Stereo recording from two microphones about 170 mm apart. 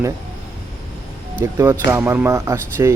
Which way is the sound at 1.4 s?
15° right (ahead or behind).